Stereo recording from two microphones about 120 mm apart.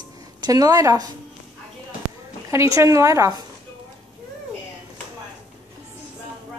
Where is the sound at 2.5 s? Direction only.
25° right (ahead or behind).